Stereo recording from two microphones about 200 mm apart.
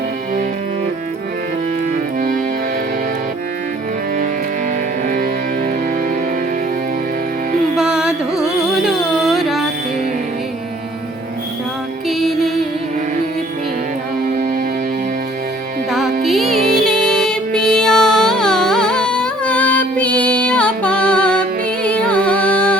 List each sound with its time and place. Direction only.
5.0 s music: 45° right (ahead or behind)
7.8 s carnatic music: 5° right (ahead or behind)
12.0 s music: centre (ahead or behind)
15.9 s music: centre (ahead or behind)